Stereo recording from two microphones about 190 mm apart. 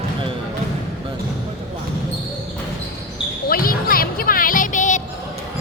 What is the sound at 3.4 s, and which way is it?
Music, 50° left (ahead or behind).